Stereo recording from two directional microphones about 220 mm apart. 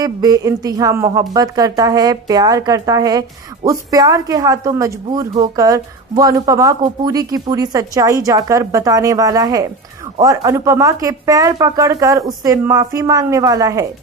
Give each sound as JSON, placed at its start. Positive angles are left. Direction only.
{"t": 0.0, "sound": "a woman's voice", "side_deg": -15}